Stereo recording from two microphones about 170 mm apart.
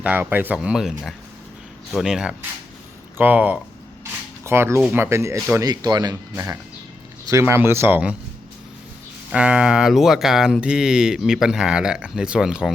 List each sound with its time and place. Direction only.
0.0 s speech: 10° right (ahead or behind)
9.3 s speech: 5° right (ahead or behind)